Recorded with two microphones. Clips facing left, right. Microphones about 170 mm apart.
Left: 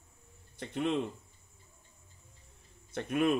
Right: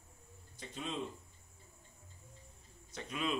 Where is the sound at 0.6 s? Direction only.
65° left (ahead or behind).